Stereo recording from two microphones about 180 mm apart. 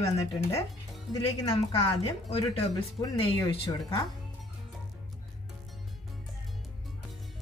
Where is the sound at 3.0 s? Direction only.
25° left (ahead or behind).